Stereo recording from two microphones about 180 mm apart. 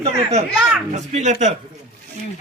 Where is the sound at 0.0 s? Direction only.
35° right (ahead or behind).